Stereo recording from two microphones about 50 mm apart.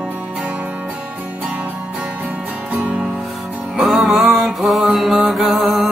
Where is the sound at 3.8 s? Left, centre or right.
Centre.